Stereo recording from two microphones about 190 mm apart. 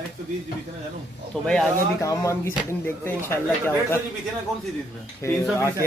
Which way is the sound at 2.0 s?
15° left (ahead or behind).